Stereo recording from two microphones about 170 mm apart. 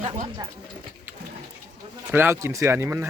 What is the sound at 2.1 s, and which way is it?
Speech, 15° right (ahead or behind).